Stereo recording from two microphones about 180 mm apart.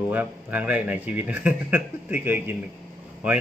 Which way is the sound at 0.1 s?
10° right (ahead or behind).